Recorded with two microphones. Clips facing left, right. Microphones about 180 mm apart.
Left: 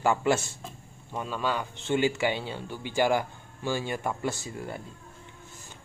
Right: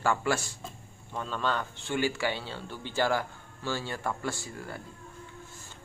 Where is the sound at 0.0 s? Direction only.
20° left (ahead or behind).